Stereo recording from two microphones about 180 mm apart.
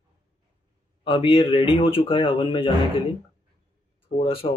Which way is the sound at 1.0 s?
30° left (ahead or behind).